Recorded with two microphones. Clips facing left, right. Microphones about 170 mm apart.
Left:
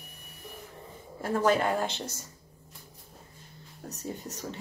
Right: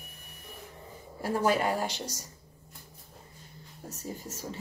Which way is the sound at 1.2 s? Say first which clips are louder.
Left 1 dB; 10° right (ahead or behind).